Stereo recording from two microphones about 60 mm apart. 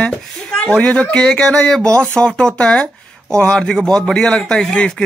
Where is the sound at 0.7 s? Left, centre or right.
Centre.